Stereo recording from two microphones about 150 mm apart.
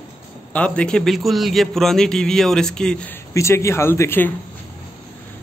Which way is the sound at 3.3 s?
20° left (ahead or behind).